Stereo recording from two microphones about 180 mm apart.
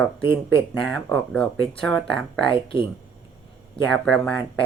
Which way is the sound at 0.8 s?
5° left (ahead or behind).